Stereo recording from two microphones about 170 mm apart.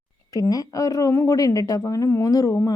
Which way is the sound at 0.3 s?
20° left (ahead or behind).